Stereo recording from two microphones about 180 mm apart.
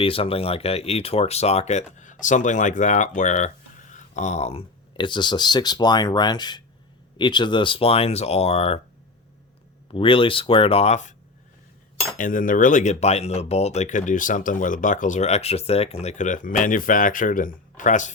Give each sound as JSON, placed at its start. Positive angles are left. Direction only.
{"t": 0.0, "sound": "speech", "side_deg": 30}
{"t": 9.9, "sound": "speech", "side_deg": 30}
{"t": 12.1, "sound": "speech", "side_deg": 50}